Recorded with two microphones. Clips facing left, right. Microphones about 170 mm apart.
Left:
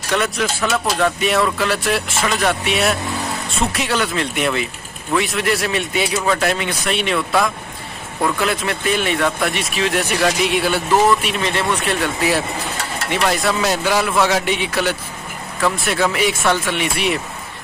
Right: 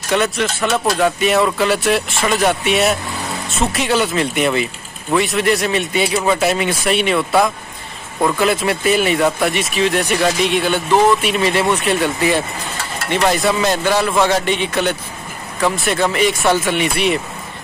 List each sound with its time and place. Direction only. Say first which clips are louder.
0.1 s speech: right 2 dB; centre (ahead or behind)